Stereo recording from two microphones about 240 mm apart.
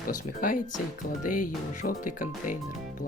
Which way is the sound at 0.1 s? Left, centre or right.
Left.